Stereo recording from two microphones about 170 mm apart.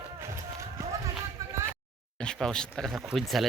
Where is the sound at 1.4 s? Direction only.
20° right (ahead or behind).